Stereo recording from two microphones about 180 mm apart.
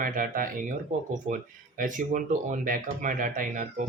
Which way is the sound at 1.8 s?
45° right (ahead or behind).